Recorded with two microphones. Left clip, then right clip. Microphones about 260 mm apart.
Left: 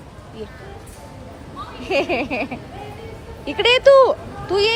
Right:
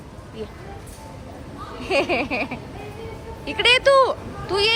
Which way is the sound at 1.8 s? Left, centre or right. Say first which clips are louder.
Left 1 dB; centre.